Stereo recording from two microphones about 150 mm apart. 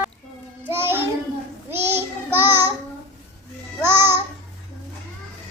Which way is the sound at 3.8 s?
15° right (ahead or behind).